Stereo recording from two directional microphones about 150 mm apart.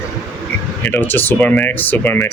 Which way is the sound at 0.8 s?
15° left (ahead or behind).